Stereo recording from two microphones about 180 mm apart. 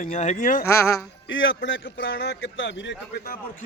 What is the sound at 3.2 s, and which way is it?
Speech, 55° left (ahead or behind).